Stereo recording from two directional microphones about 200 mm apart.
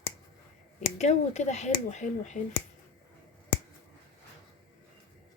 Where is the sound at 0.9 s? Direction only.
35° left (ahead or behind).